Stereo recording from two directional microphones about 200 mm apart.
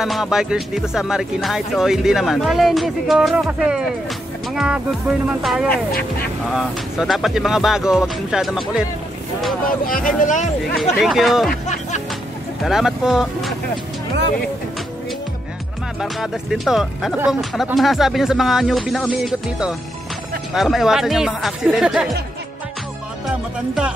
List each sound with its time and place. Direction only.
0.0 s speech: centre (ahead or behind)
10.2 s speech: 40° left (ahead or behind)
10.8 s speech: centre (ahead or behind)
12.6 s speech: centre (ahead or behind)
16.0 s speech: centre (ahead or behind)